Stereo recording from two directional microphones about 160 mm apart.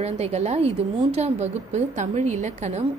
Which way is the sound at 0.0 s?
40° right (ahead or behind).